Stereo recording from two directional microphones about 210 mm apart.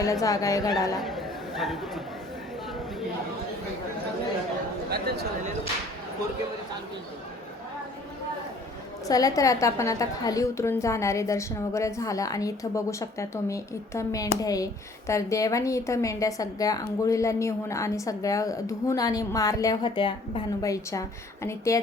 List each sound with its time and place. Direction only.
0.0 s a woman's voice: 15° left (ahead or behind)
0.9 s chatter: centre (ahead or behind)
9.0 s a woman's voice: 15° left (ahead or behind)